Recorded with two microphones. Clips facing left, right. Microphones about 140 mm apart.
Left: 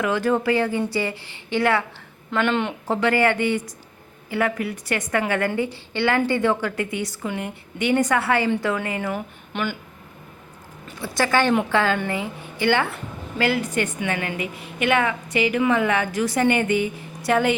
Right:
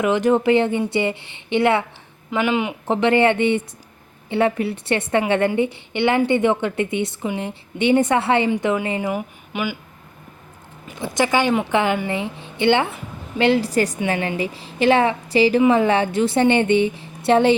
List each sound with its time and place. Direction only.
0.0 s a woman's voice: 20° right (ahead or behind)
2.3 s speech: 10° right (ahead or behind)
2.8 s a woman's voice: 20° right (ahead or behind)
10.8 s a woman's voice: 20° right (ahead or behind)